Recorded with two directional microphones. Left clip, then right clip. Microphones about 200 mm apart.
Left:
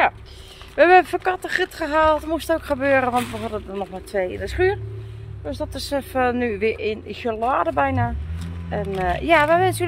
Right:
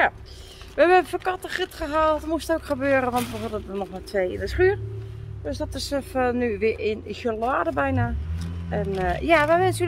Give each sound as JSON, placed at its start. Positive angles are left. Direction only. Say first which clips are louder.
{"t": 0.7, "sound": "speech", "louder": "left 4 dB", "side_deg": 10}
{"t": 2.0, "sound": "speech", "louder": "left 4 dB", "side_deg": -5}